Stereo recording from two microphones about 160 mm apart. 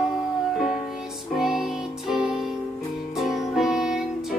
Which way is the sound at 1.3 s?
Centre (ahead or behind).